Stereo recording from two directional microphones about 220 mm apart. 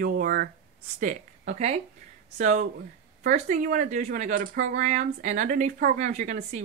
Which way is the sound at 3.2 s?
35° right (ahead or behind).